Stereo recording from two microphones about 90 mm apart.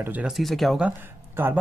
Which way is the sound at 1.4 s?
25° right (ahead or behind).